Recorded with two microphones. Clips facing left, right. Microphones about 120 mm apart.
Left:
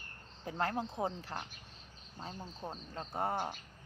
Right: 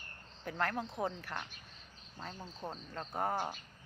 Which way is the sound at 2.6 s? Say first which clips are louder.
Right 1 dB; 15° left (ahead or behind).